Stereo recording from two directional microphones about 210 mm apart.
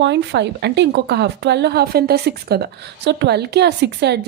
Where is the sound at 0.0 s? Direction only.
55° right (ahead or behind).